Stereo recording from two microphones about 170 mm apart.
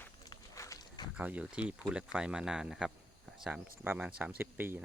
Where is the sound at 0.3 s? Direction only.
20° left (ahead or behind).